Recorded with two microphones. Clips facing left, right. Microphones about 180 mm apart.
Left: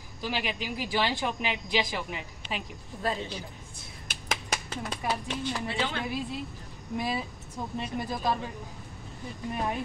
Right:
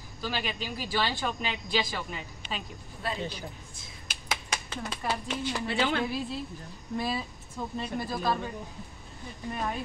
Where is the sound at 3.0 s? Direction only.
40° left (ahead or behind).